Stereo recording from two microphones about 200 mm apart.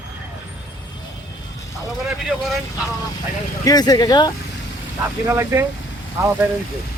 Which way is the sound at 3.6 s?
20° left (ahead or behind).